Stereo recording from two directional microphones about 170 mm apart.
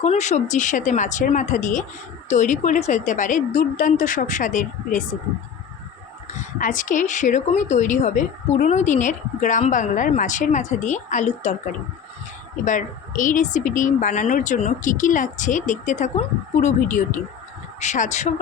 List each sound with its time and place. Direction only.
0.0 s a woman's voice: 40° left (ahead or behind)
6.3 s a woman's voice: 50° left (ahead or behind)